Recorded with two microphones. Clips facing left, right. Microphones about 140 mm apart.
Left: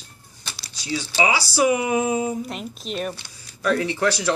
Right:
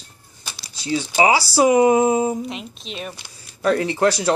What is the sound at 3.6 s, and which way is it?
Speech, 30° right (ahead or behind).